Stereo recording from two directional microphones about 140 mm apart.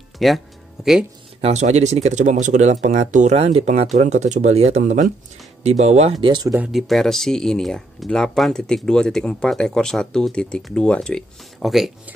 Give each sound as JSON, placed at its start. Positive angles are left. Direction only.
{"t": 0.2, "sound": "speech", "side_deg": 0}
{"t": 1.4, "sound": "speech", "side_deg": -55}
{"t": 6.2, "sound": "speech", "side_deg": -35}
{"t": 6.7, "sound": "speech", "side_deg": 0}